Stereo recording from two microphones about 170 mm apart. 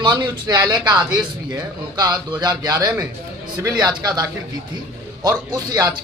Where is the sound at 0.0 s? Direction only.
25° right (ahead or behind).